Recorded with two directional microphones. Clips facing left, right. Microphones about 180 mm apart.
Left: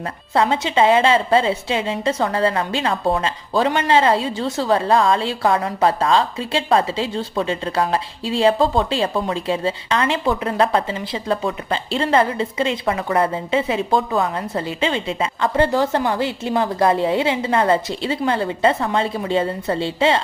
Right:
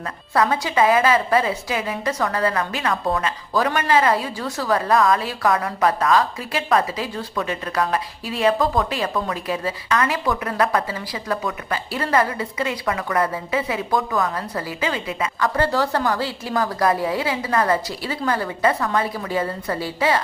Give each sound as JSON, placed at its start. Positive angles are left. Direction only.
{"t": 0.3, "sound": "a woman's voice", "side_deg": 25}